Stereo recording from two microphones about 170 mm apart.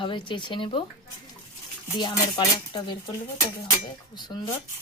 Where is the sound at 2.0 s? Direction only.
25° left (ahead or behind).